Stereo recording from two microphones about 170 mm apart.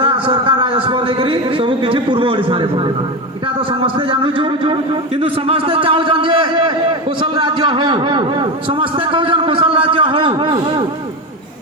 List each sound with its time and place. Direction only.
0.0 s a man's voice: 30° right (ahead or behind)
4.1 s a man's voice: 30° right (ahead or behind)